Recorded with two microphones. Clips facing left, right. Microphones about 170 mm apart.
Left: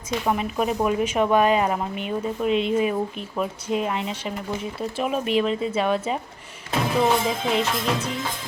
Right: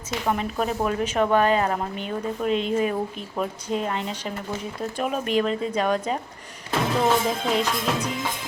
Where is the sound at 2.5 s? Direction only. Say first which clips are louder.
Left 2 dB; 40° right (ahead or behind).